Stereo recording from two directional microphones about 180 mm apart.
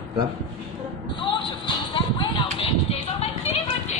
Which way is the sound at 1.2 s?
25° left (ahead or behind).